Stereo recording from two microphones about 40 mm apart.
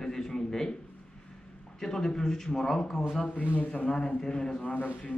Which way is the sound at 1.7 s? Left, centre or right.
Centre.